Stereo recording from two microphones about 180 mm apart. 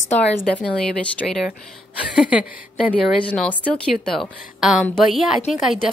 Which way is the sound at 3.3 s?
10° left (ahead or behind).